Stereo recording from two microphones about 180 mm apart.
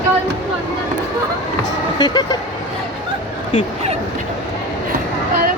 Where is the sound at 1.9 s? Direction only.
25° left (ahead or behind).